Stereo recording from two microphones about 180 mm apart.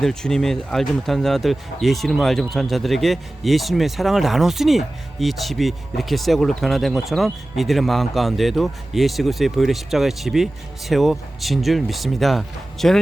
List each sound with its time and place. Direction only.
0.0 s speech: 5° left (ahead or behind)